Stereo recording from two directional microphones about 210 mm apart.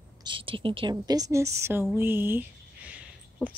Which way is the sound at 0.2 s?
25° right (ahead or behind).